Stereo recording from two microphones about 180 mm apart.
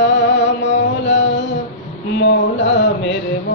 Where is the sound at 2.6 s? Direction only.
90° left.